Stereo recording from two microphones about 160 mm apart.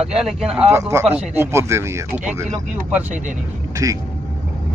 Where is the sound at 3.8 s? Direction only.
20° right (ahead or behind).